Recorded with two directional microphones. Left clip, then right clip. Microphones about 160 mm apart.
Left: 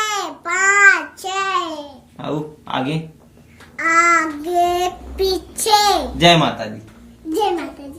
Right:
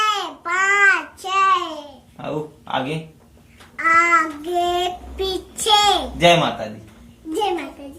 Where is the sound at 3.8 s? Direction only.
35° left (ahead or behind).